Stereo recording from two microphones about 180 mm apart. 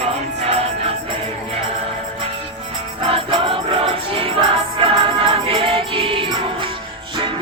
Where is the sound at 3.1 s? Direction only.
30° right (ahead or behind).